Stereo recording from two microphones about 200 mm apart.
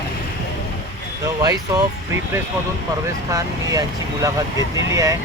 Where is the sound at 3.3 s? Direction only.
15° right (ahead or behind).